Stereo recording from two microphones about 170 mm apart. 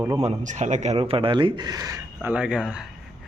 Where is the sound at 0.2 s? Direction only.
40° right (ahead or behind); by 2.3 s 20° right (ahead or behind).